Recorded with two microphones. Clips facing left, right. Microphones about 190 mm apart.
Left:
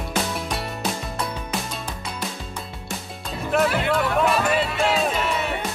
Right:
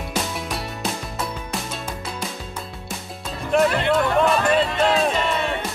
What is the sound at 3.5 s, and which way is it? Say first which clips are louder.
Music: right 3 dB; 5° left (ahead or behind).